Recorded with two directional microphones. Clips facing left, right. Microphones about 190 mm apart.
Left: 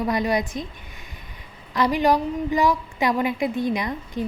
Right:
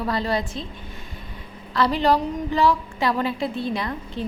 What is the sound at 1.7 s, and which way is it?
A woman's voice, 15° left (ahead or behind).